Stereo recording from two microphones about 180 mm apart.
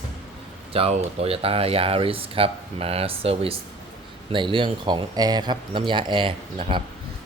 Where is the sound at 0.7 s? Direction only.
35° right (ahead or behind).